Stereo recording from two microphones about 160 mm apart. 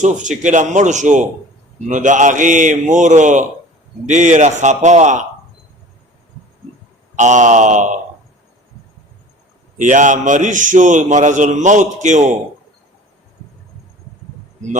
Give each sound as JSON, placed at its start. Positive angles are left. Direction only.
{"t": 0.0, "sound": "a man's voice", "side_deg": -50}
{"t": 7.2, "sound": "a man's voice", "side_deg": -50}
{"t": 9.7, "sound": "a man's voice", "side_deg": -50}